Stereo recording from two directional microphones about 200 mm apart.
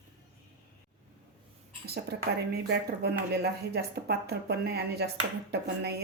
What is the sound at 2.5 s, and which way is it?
Speech, 55° right (ahead or behind).